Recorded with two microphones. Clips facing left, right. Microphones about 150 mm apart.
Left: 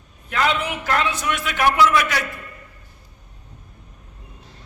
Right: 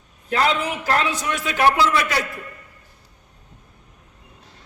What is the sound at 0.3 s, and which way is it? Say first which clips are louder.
A man's voice: right 1 dB; 35° right (ahead or behind).